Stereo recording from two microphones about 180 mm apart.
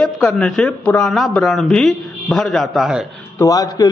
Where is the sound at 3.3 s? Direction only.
20° left (ahead or behind).